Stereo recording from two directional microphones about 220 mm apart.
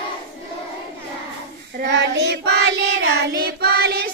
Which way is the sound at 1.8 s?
50° right (ahead or behind).